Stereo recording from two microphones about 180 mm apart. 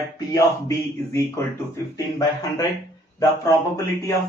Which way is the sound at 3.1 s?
20° left (ahead or behind).